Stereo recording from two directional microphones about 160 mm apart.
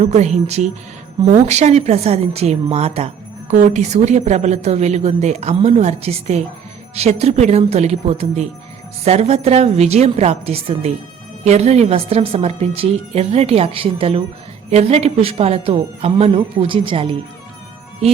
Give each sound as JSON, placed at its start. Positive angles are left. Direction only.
{"t": 0.0, "sound": "a woman's voice", "side_deg": -45}